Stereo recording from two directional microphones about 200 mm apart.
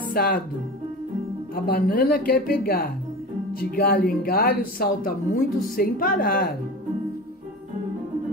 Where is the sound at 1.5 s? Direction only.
45° left (ahead or behind).